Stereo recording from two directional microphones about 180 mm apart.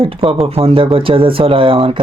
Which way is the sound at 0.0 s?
30° right (ahead or behind).